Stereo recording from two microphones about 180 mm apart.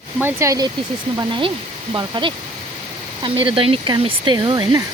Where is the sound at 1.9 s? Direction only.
25° right (ahead or behind).